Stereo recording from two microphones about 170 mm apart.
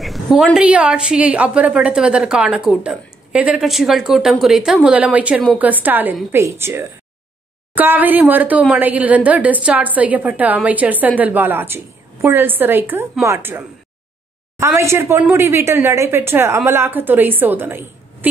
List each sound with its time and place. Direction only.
0.0 s a woman's voice: centre (ahead or behind)